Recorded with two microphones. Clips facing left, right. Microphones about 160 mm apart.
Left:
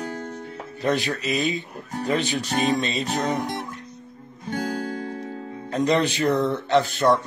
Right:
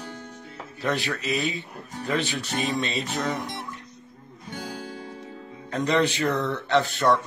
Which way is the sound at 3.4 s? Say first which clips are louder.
Left 6 dB; 55° left (ahead or behind).